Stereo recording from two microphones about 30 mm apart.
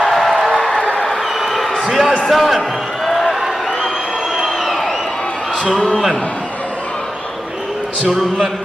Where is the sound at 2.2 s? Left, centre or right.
Centre.